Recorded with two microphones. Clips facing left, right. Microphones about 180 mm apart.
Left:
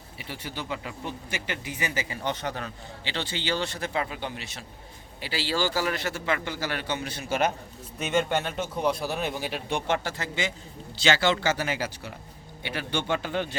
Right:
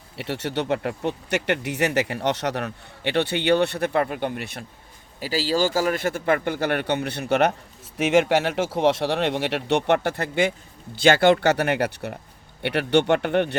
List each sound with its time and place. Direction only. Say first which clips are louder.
0.2 s speech: right 10 dB; 70° right (ahead or behind); by 4.6 s 55° right (ahead or behind)
5.2 s a man's voice: right 6 dB; 40° right (ahead or behind); by 7.5 s 65° right (ahead or behind)
7.9 s speech: right 7 dB; 90° right; by 13.6 s 65° right (ahead or behind)